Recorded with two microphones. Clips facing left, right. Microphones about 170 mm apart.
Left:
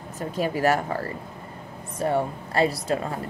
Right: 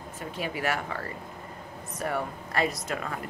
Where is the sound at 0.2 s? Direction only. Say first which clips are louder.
Left 8 dB; 40° left (ahead or behind).